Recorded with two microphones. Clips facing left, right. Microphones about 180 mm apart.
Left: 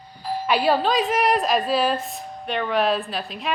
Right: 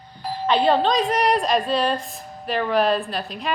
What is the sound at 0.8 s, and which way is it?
A woman's voice, 5° left (ahead or behind).